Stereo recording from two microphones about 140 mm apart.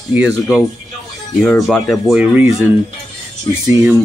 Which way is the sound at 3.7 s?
15° right (ahead or behind).